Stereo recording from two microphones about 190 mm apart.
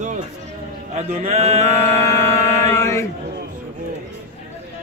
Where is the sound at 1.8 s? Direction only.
15° left (ahead or behind).